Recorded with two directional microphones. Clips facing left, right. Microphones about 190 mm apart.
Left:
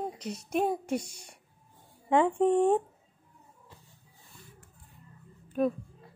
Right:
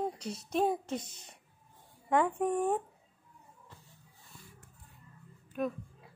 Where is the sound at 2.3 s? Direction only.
30° left (ahead or behind).